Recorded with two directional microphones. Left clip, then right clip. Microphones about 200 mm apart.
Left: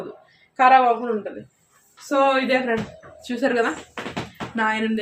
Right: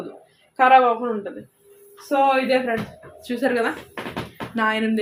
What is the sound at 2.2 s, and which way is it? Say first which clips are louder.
A woman's voice: even; centre (ahead or behind).